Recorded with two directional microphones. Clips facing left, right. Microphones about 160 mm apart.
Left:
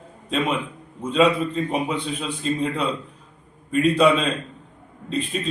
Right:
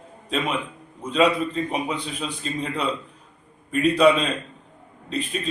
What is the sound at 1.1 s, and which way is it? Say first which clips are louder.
Speech: left 1 dB; centre (ahead or behind).